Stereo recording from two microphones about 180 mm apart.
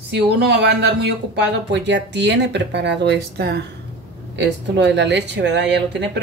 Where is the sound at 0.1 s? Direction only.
65° right (ahead or behind).